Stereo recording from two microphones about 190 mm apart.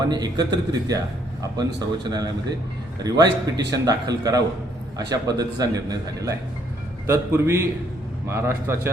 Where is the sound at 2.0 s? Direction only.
20° right (ahead or behind).